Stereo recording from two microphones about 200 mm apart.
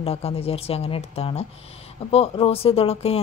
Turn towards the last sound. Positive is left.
turn(degrees=30)  # may be behind; listen again after turning